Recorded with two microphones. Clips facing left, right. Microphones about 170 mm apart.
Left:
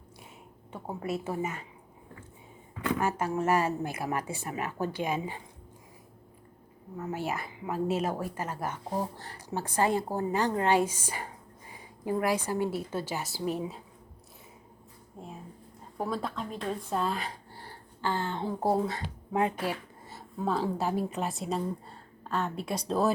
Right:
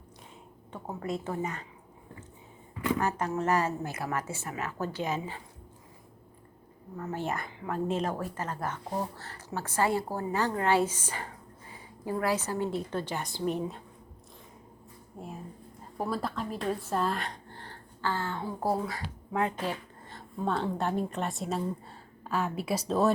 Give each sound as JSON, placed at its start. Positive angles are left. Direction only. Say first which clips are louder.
{"t": 0.7, "sound": "a woman's voice", "louder": "left 1 dB", "side_deg": 10}
{"t": 3.2, "sound": "speech", "louder": "left 1 dB", "side_deg": 10}
{"t": 6.9, "sound": "speech", "louder": "even", "side_deg": 10}
{"t": 15.2, "sound": "speech", "louder": "right 2 dB", "side_deg": -5}